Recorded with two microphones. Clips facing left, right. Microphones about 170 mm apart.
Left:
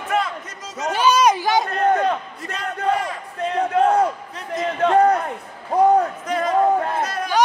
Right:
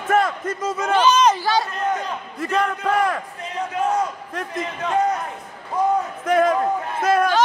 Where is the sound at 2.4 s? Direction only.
60° right (ahead or behind).